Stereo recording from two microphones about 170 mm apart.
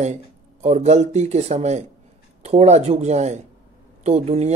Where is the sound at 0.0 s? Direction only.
40° right (ahead or behind).